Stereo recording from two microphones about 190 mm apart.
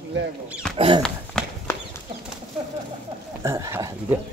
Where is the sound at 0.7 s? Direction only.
30° right (ahead or behind).